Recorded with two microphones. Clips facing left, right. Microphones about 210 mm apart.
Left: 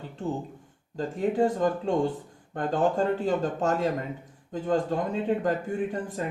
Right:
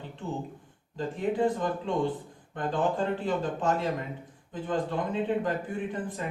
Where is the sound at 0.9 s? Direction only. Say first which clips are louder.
Left 3 dB; 40° left (ahead or behind).